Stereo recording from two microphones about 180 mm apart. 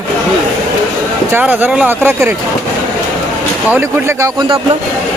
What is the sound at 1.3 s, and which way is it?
Speech, 10° right (ahead or behind).